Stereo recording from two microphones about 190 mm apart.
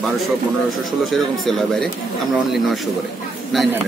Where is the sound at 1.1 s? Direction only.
Centre (ahead or behind).